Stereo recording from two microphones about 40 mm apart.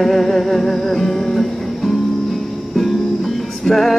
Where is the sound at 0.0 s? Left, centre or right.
Centre.